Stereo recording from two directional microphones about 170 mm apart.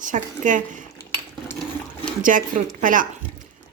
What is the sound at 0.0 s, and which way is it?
Speech, 50° right (ahead or behind).